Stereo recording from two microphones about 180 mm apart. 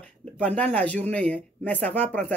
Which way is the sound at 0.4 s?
5° left (ahead or behind).